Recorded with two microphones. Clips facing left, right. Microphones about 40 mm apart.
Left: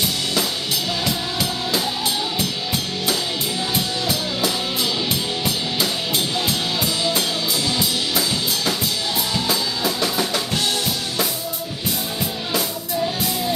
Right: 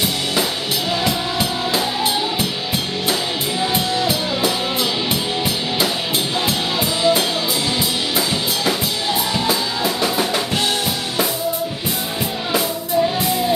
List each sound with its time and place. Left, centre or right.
1.0 s music: right
2.3 s drum kit: right
3.7 s music: centre
9.3 s drum kit: centre